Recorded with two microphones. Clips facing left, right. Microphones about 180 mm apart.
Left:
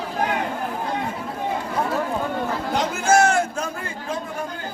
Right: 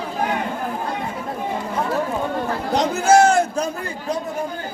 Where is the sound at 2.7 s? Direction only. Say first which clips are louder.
Right 4 dB; 35° right (ahead or behind).